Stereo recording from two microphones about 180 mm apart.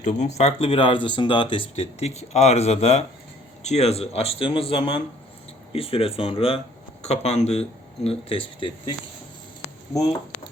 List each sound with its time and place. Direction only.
0.0 s speech: 40° left (ahead or behind)